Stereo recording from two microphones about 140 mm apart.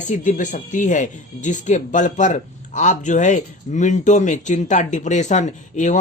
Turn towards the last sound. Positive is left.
turn(degrees=60)  # may be behind; listen again after turning